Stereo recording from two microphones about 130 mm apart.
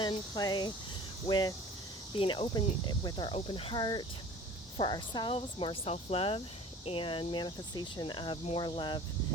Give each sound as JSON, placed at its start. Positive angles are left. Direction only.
{"t": 0.0, "sound": "cricket", "side_deg": 30}
{"t": 5.4, "sound": "speech", "side_deg": 45}
{"t": 6.8, "sound": "cricket", "side_deg": 45}